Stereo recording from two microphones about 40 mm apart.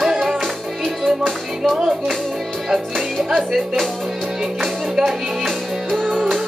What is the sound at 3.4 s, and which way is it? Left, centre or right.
Speech, centre.